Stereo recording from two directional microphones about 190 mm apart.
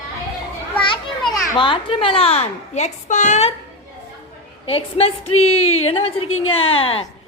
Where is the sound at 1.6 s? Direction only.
25° left (ahead or behind).